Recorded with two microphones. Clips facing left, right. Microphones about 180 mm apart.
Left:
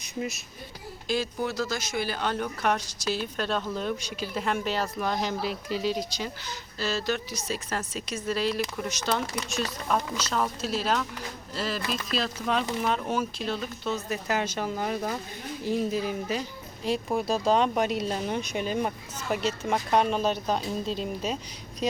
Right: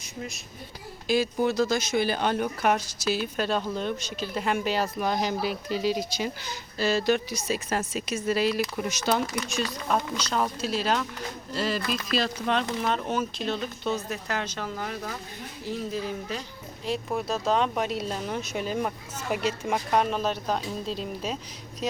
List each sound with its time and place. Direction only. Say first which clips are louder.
1.0 s speech: right 5 dB; 10° right (ahead or behind); by 16.4 s 10° left (ahead or behind)
17.2 s speech: left 2 dB; centre (ahead or behind)